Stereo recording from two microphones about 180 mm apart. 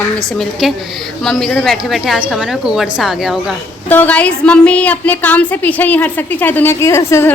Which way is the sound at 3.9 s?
10° left (ahead or behind).